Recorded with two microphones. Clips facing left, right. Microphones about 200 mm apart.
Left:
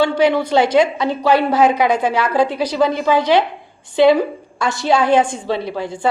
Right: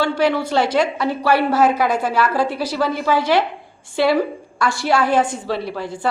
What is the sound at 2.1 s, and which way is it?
A woman's voice, 20° left (ahead or behind).